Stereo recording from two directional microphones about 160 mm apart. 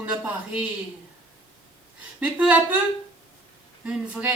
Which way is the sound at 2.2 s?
10° right (ahead or behind).